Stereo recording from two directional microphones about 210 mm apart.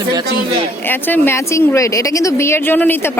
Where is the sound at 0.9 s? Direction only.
10° left (ahead or behind).